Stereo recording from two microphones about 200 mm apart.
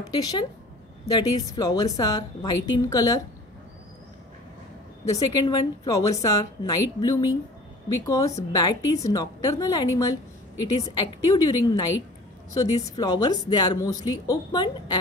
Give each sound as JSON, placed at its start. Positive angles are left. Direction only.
{"t": 0.0, "sound": "a woman's voice", "side_deg": 20}
{"t": 5.5, "sound": "a woman's voice", "side_deg": 15}